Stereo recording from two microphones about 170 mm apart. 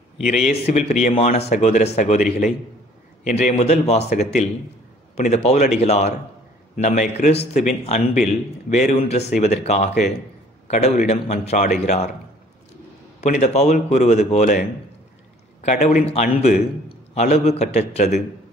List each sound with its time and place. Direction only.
0.5 s a man's voice: 40° left (ahead or behind)
13.2 s speech: 40° left (ahead or behind)